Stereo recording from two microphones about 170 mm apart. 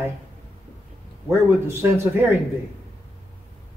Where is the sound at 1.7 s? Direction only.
15° right (ahead or behind).